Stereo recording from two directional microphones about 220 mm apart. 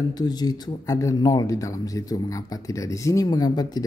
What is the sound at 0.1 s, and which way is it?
Speech, 20° left (ahead or behind).